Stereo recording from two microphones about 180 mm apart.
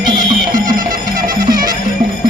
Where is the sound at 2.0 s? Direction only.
25° right (ahead or behind).